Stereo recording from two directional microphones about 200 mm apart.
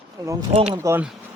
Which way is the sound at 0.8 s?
15° right (ahead or behind).